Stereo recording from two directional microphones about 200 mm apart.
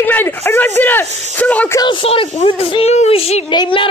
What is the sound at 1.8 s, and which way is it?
Speech, 25° left (ahead or behind).